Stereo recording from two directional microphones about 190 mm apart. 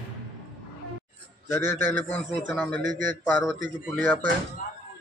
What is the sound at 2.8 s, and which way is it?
Speech, 45° right (ahead or behind).